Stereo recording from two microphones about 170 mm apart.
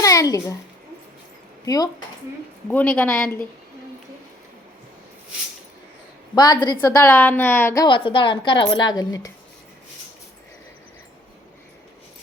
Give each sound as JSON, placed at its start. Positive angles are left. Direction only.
{"t": 0.0, "sound": "a sound", "side_deg": 20}
{"t": 1.6, "sound": "speech", "side_deg": 20}
{"t": 2.6, "sound": "a woman's voice", "side_deg": 10}
{"t": 6.3, "sound": "a woman's voice", "side_deg": 25}
{"t": 6.8, "sound": "a woman's voice", "side_deg": 10}
{"t": 7.9, "sound": "a woman's voice", "side_deg": 30}